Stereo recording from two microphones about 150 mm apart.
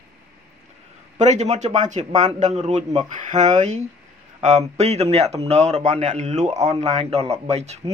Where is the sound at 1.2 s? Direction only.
50° right (ahead or behind).